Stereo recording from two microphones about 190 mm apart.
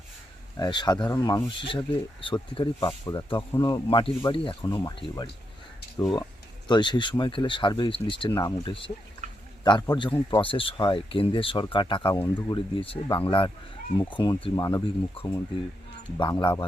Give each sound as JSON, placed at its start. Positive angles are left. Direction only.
{"t": 0.5, "sound": "speech", "side_deg": 25}